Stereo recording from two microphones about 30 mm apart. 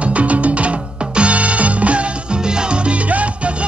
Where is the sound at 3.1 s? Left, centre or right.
Right.